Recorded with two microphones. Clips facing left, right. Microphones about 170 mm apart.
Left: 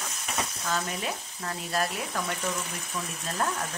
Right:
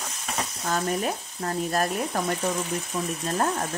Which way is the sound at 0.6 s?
45° right (ahead or behind).